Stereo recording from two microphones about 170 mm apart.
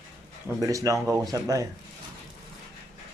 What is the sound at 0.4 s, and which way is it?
Speech, 20° right (ahead or behind).